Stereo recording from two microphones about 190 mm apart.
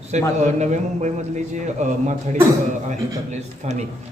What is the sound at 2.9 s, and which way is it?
Speech, 40° right (ahead or behind).